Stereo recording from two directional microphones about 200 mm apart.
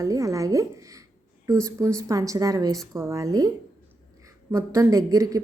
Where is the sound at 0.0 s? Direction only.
15° right (ahead or behind).